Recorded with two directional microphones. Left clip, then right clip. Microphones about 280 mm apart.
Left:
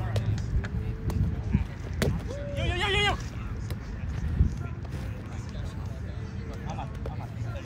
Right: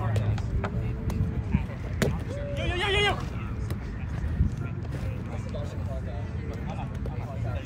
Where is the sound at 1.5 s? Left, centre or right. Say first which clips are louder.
Even; right.